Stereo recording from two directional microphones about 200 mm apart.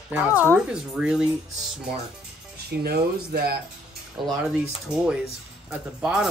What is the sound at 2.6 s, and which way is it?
Speech, 50° right (ahead or behind).